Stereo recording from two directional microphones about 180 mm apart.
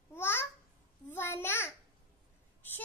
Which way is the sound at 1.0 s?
15° left (ahead or behind).